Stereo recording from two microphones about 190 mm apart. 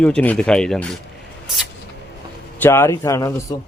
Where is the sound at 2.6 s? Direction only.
15° left (ahead or behind).